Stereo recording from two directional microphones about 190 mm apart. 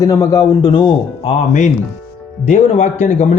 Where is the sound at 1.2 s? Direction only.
40° left (ahead or behind).